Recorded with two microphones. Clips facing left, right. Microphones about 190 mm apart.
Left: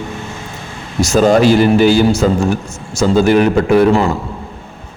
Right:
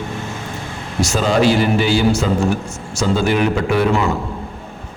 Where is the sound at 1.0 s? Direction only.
45° left (ahead or behind).